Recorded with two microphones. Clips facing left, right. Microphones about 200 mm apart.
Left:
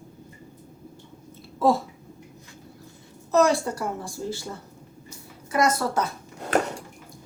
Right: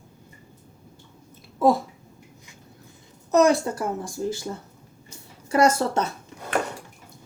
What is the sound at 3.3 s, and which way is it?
Speech, 20° right (ahead or behind).